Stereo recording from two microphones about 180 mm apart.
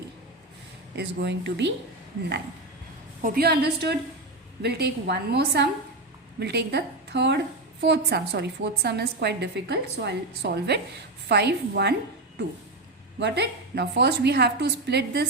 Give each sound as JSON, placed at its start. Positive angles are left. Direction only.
{"t": 0.9, "sound": "a woman's voice", "side_deg": -70}
{"t": 3.2, "sound": "a woman's voice", "side_deg": -50}
{"t": 13.1, "sound": "a woman's voice", "side_deg": -70}